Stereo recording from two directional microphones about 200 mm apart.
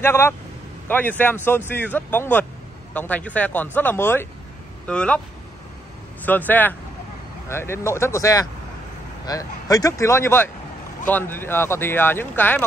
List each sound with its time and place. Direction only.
0.0 s speech: 10° left (ahead or behind)
6.2 s speech: 10° left (ahead or behind)